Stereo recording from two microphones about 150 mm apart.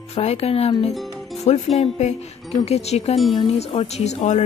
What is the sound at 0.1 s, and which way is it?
Speech, 45° left (ahead or behind).